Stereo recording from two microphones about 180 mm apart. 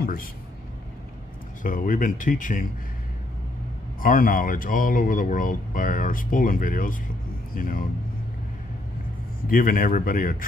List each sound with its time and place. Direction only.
0.0 s speech: 55° left (ahead or behind)
1.6 s speech: 50° left (ahead or behind)
4.0 s speech: 50° left (ahead or behind)
9.5 s speech: 50° left (ahead or behind)